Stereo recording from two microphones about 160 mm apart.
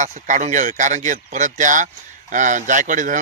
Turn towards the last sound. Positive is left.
turn(degrees=-55)  # may be behind; listen again after turning